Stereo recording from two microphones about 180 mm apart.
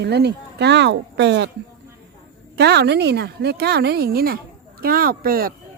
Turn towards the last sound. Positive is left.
turn(degrees=-55)  # may be behind; listen again after turning